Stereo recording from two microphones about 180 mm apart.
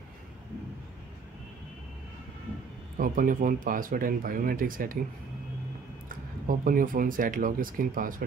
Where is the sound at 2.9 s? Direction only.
50° right (ahead or behind).